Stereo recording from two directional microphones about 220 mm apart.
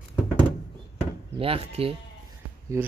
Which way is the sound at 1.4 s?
25° right (ahead or behind).